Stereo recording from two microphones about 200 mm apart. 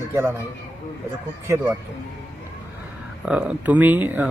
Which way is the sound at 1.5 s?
15° right (ahead or behind).